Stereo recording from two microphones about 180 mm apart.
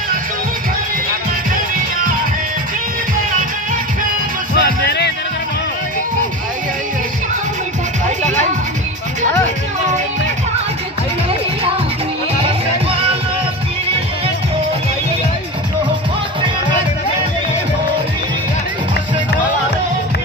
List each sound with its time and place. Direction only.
4.6 s music: 70° left (ahead or behind)